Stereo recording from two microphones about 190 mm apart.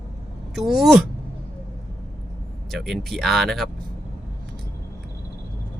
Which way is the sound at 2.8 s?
Centre (ahead or behind).